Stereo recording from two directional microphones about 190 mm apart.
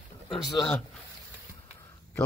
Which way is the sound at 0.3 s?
5° left (ahead or behind).